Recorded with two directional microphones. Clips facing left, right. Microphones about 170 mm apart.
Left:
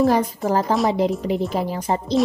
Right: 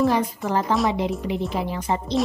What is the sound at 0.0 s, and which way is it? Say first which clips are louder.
A woman's voice: left 3 dB; 40° left (ahead or behind).